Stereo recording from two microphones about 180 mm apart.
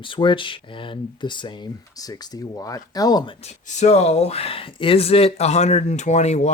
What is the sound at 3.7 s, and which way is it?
Speech, 35° left (ahead or behind).